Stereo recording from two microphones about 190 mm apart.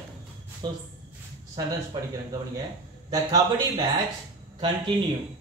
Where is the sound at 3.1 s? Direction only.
20° right (ahead or behind).